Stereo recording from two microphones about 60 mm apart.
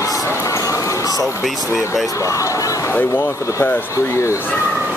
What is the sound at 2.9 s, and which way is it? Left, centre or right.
Speech, left.